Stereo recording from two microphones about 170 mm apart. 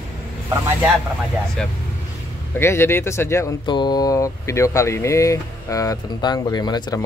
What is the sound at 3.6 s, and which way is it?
Speech, 25° left (ahead or behind).